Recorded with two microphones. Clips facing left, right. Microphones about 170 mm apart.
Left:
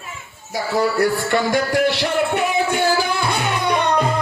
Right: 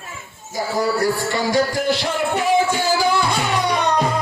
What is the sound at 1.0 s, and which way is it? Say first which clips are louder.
Music: left 2 dB; 55° left (ahead or behind).